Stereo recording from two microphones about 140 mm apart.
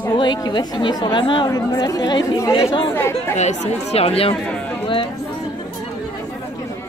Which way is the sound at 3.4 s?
50° left (ahead or behind).